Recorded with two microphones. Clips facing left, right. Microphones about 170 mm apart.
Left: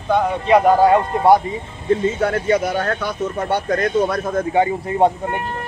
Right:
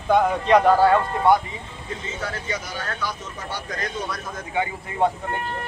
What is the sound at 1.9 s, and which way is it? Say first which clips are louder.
Speech: left 14 dB; 55° left (ahead or behind).